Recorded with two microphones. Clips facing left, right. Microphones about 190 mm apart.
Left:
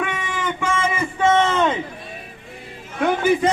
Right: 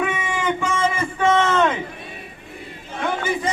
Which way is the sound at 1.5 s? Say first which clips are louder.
Right 1 dB; 20° left (ahead or behind).